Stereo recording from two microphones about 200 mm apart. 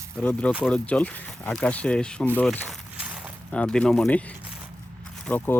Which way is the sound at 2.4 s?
5° left (ahead or behind).